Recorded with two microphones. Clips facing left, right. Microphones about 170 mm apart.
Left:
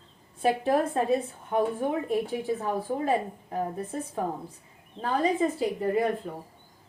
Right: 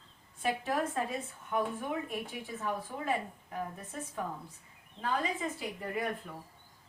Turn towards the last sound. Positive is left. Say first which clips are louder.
# left 10 dB
turn(degrees=30)  # may be behind; listen again after turning